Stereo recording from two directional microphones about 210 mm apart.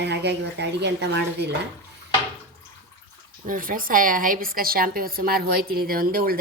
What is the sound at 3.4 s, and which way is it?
A woman's voice, 40° right (ahead or behind).